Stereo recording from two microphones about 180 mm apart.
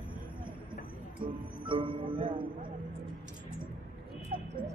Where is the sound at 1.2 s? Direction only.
30° right (ahead or behind).